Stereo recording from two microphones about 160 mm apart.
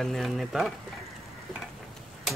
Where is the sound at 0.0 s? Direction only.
Centre (ahead or behind).